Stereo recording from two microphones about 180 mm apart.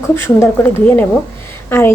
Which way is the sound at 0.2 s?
15° left (ahead or behind).